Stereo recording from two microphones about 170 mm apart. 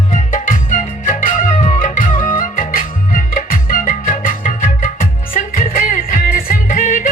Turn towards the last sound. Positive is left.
turn(degrees=55)  # may be behind; listen again after turning